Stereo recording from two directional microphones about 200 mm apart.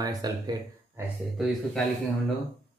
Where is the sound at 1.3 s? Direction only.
Centre (ahead or behind).